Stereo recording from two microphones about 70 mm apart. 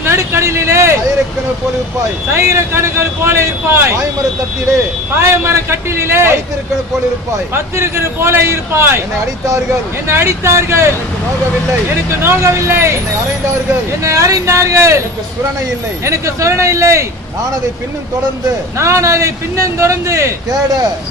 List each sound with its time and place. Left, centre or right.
0.0 s a sound: right
2.3 s speech: right
5.2 s speech: right
7.5 s speech: right
10.1 s speech: right
12.2 s speech: right
14.0 s a man's voice: right
16.0 s a man's voice: right
18.8 s a man's voice: right